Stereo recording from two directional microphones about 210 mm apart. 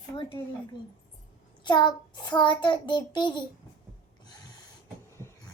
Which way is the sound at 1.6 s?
20° left (ahead or behind).